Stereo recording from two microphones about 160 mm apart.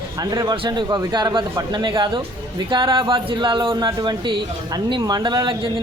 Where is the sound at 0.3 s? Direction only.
25° right (ahead or behind).